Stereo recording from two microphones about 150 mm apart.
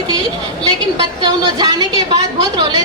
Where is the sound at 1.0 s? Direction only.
25° right (ahead or behind).